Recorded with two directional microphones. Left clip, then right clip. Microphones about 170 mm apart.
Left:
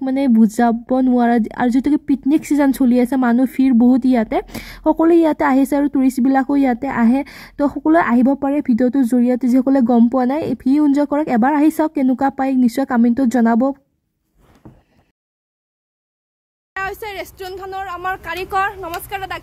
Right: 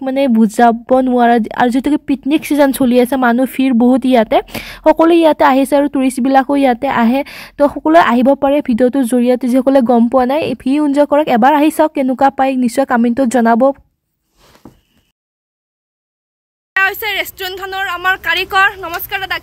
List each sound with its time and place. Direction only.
0.0 s speech: 20° right (ahead or behind)
16.7 s speech: centre (ahead or behind)